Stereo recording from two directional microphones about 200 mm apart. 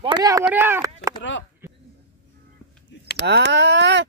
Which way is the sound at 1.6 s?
15° right (ahead or behind).